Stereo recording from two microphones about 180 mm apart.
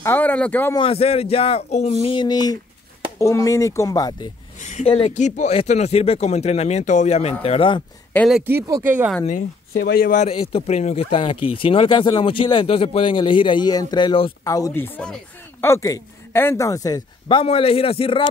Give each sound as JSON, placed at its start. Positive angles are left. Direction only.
{"t": 0.0, "sound": "speech", "side_deg": 10}
{"t": 0.7, "sound": "speech", "side_deg": 30}
{"t": 2.1, "sound": "speech", "side_deg": 20}
{"t": 4.6, "sound": "speech", "side_deg": 40}
{"t": 8.3, "sound": "speech", "side_deg": -10}
{"t": 9.2, "sound": "speech", "side_deg": 45}